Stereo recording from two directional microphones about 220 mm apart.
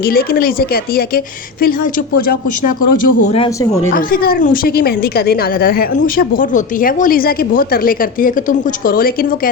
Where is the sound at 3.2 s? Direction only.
25° left (ahead or behind).